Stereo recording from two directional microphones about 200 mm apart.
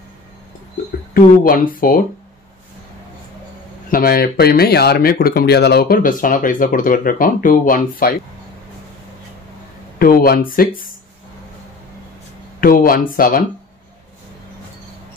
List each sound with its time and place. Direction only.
1.1 s speech: 45° left (ahead or behind)
3.9 s speech: 45° left (ahead or behind)
9.9 s speech: 45° left (ahead or behind)
12.5 s speech: 45° left (ahead or behind)